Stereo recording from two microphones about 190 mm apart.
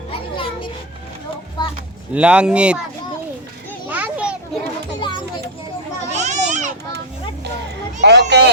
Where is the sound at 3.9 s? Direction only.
10° right (ahead or behind).